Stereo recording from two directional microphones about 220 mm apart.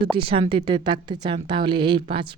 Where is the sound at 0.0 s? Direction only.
25° right (ahead or behind).